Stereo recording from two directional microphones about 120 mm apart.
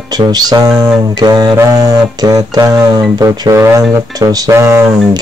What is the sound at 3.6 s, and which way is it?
Speech, 25° right (ahead or behind).